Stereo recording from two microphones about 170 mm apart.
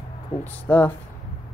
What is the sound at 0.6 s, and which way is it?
Speech, 10° left (ahead or behind).